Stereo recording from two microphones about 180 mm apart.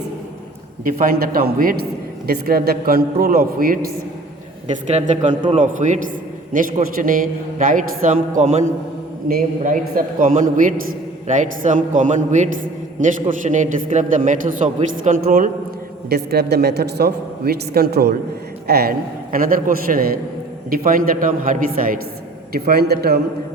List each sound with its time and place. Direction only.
0.9 s a man's voice: 50° right (ahead or behind)
4.9 s a man's voice: 40° right (ahead or behind)
9.3 s a man's voice: 50° right (ahead or behind)
16.0 s a man's voice: 60° right (ahead or behind)